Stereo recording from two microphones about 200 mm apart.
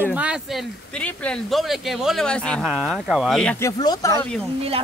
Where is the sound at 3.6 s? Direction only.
15° left (ahead or behind).